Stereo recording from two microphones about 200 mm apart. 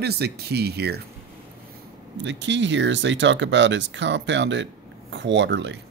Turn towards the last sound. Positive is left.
turn(degrees=-60)  # may be behind; listen again after turning